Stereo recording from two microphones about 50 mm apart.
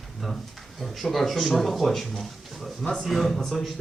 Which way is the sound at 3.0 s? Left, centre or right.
Centre.